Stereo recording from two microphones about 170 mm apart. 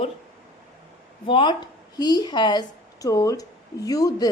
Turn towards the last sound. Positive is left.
turn(degrees=20)  # may be behind; listen again after turning